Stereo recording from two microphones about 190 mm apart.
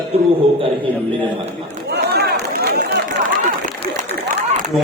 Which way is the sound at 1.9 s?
60° right (ahead or behind).